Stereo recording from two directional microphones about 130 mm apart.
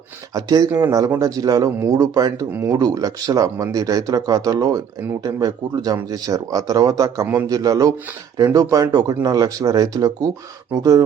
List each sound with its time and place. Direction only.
0.3 s speech: 30° right (ahead or behind)